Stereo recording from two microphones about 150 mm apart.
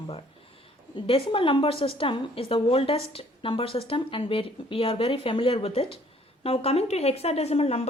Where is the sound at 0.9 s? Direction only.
35° left (ahead or behind).